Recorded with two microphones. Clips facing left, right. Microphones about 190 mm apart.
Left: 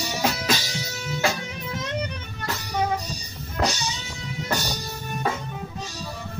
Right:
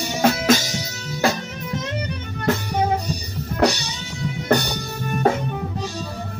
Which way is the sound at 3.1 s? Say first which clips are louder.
Right 8 dB; 65° right (ahead or behind).